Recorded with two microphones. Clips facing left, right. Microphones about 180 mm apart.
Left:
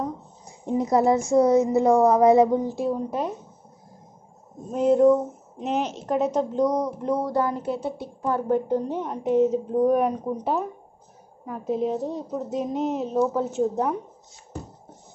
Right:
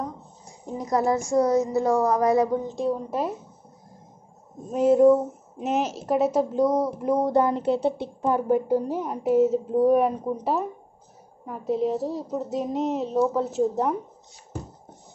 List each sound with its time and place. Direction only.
0.7 s a woman's voice: 25° left (ahead or behind)
2.6 s a woman's voice: 5° left (ahead or behind)
4.6 s a woman's voice: 5° right (ahead or behind)
7.2 s speech: 20° right (ahead or behind)
8.3 s a woman's voice: 10° right (ahead or behind)